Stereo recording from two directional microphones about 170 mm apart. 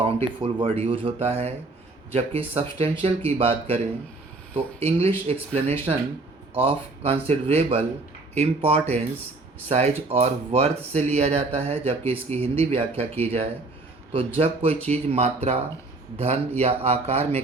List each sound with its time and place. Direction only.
0.4 s speech: 30° right (ahead or behind)